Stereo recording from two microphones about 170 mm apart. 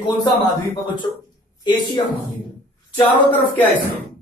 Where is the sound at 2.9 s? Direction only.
10° left (ahead or behind).